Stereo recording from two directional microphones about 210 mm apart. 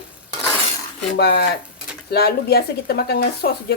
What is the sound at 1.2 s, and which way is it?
Speech, 50° left (ahead or behind).